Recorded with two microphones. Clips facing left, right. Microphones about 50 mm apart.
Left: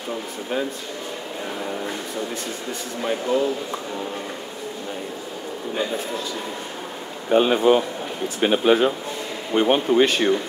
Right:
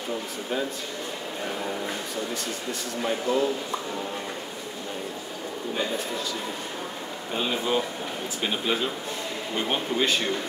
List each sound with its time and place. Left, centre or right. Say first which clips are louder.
3.0 s speech: left 3 dB; centre
7.2 s speech: left 11 dB; left
9.9 s speech: left 5 dB; left